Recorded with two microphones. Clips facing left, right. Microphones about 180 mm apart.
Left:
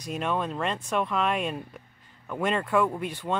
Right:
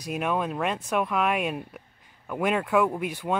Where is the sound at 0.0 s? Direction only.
10° right (ahead or behind).